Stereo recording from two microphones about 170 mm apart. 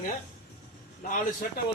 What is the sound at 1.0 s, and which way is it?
Speech, 50° left (ahead or behind).